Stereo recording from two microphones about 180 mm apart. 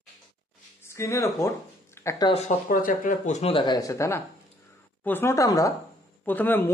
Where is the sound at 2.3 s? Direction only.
35° left (ahead or behind).